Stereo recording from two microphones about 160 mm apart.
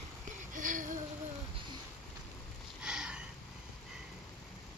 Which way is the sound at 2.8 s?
5° right (ahead or behind).